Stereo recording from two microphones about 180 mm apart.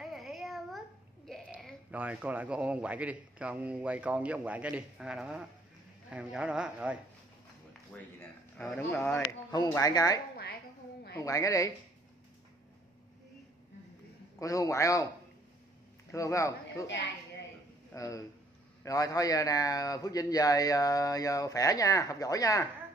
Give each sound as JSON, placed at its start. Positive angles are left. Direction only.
{"t": 0.0, "sound": "a sound", "side_deg": 0}
{"t": 2.0, "sound": "a man's voice", "side_deg": -10}
{"t": 7.9, "sound": "speech", "side_deg": 5}
{"t": 9.3, "sound": "speech", "side_deg": 20}
{"t": 14.4, "sound": "speech", "side_deg": 20}
{"t": 16.1, "sound": "speech", "side_deg": 15}
{"t": 17.9, "sound": "speech", "side_deg": 20}